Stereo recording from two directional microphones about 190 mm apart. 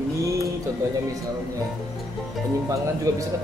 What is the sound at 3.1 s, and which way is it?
Speech, 15° right (ahead or behind).